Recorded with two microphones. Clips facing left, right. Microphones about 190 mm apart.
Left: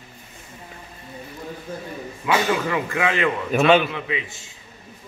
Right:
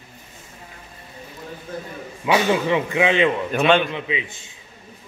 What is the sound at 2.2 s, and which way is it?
A man's voice, 20° right (ahead or behind).